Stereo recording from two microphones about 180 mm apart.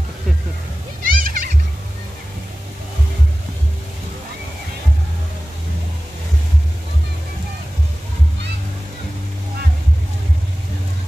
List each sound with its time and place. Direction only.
1.0 s children playing: 50° right (ahead or behind)